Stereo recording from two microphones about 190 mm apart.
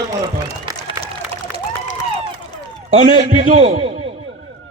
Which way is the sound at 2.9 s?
30° right (ahead or behind).